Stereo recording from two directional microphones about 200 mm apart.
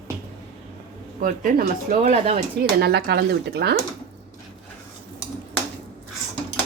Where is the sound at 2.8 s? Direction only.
55° right (ahead or behind).